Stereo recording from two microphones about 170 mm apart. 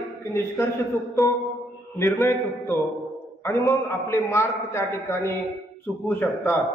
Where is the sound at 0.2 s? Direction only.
15° left (ahead or behind).